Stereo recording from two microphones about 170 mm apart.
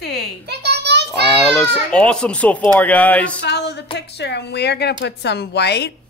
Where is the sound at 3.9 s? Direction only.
80° left.